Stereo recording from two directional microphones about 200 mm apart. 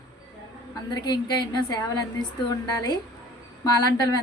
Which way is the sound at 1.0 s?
20° left (ahead or behind).